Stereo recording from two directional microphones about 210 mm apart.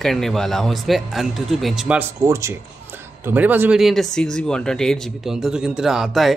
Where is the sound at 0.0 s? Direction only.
Centre (ahead or behind).